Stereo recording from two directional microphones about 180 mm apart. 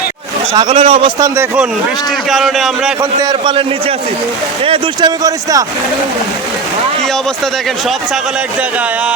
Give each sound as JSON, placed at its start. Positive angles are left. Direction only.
{"t": 0.5, "sound": "speech", "side_deg": -30}
{"t": 2.3, "sound": "a man's voice", "side_deg": 0}
{"t": 3.0, "sound": "speech", "side_deg": -20}